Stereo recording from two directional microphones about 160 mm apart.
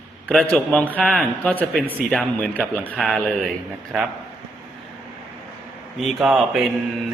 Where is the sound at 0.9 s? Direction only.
5° left (ahead or behind).